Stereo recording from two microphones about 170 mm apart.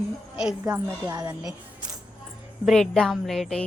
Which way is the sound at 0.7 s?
20° right (ahead or behind).